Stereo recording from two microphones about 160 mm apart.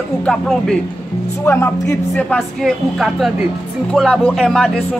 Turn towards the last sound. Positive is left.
turn(degrees=5)  # may be behind; listen again after turning